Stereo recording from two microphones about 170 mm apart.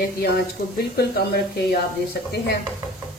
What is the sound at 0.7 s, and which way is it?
Speech, 65° left (ahead or behind).